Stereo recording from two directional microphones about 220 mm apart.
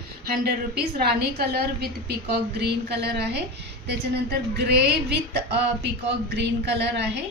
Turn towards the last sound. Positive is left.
turn(degrees=-50)  # may be behind; listen again after turning